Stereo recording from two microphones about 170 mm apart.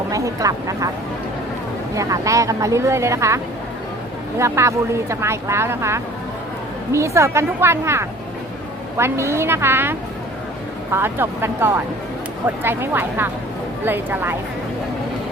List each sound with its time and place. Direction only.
0.1 s speech: 20° right (ahead or behind)
2.0 s speech: 20° right (ahead or behind)